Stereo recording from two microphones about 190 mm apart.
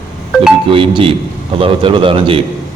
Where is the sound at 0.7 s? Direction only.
25° right (ahead or behind).